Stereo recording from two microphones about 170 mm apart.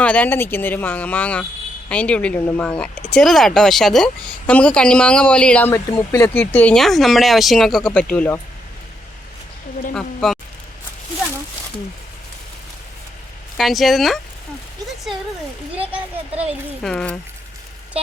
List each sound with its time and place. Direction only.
0.0 s speech: 10° left (ahead or behind)
9.9 s speech: centre (ahead or behind)
13.6 s speech: centre (ahead or behind)
15.7 s a child's voice: 10° right (ahead or behind)
16.3 s speech: 40° right (ahead or behind)
16.8 s speech: 5° left (ahead or behind)